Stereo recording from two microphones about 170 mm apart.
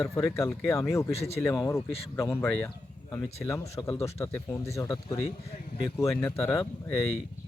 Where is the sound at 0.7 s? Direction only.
15° left (ahead or behind).